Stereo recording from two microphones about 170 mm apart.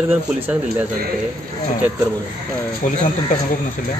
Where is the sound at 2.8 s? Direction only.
45° left (ahead or behind).